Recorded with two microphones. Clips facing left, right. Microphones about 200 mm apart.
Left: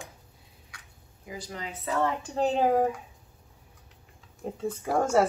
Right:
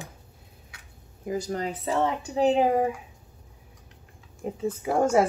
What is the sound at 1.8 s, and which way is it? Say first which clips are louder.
Speech: right 1 dB; 25° right (ahead or behind).